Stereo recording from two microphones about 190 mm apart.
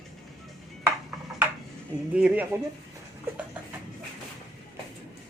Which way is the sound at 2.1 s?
10° right (ahead or behind).